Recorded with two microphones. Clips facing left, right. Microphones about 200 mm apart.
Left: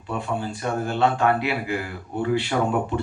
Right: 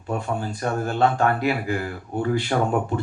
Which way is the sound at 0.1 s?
45° right (ahead or behind).